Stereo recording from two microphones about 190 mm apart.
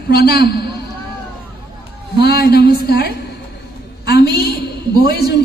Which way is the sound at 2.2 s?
55° left (ahead or behind).